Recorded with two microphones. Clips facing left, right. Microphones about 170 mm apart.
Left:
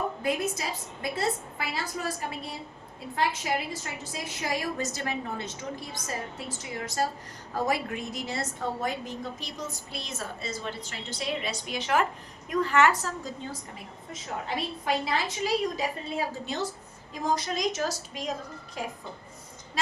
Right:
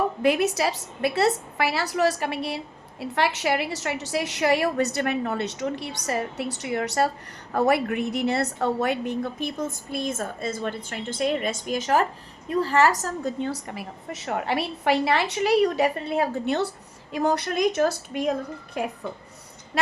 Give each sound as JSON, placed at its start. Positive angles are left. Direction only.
{"t": 0.2, "sound": "a woman's voice", "side_deg": -75}
{"t": 13.2, "sound": "a woman's voice", "side_deg": -70}
{"t": 19.7, "sound": "sheep", "side_deg": -60}